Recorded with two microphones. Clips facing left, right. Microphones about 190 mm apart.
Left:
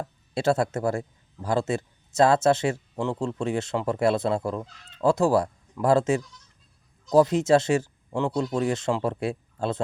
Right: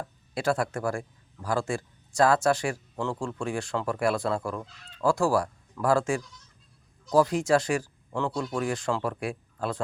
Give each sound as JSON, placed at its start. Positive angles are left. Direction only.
{"t": 0.0, "sound": "a man's voice", "side_deg": 25}